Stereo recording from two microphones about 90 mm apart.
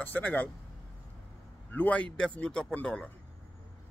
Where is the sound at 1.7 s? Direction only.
15° left (ahead or behind).